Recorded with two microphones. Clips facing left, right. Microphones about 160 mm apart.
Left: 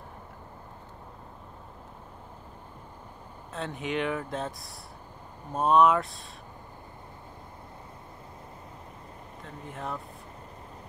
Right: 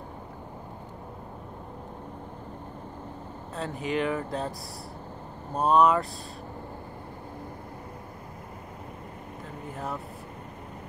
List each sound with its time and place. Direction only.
3.5 s speech: centre (ahead or behind)
9.7 s speech: centre (ahead or behind)